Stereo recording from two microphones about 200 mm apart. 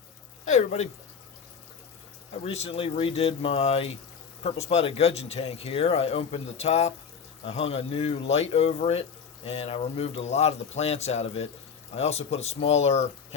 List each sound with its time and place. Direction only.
0.4 s speech: 35° left (ahead or behind)
2.3 s speech: 30° left (ahead or behind)